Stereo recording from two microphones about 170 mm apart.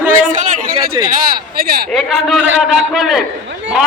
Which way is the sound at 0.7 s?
25° right (ahead or behind).